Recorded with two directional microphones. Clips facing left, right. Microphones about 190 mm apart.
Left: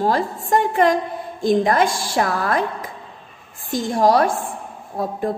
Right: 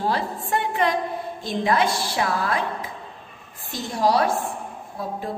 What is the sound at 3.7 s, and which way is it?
Speech, 50° left (ahead or behind).